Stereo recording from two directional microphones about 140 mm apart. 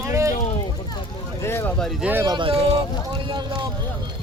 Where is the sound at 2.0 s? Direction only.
15° right (ahead or behind).